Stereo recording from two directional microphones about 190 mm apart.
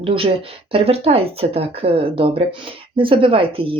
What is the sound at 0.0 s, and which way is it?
Speech, 30° right (ahead or behind).